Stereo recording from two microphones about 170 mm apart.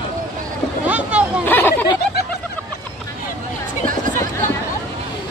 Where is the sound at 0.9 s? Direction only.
10° right (ahead or behind).